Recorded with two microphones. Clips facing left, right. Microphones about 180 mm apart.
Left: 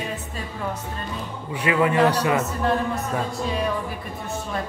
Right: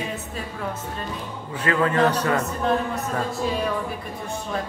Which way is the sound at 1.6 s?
15° left (ahead or behind).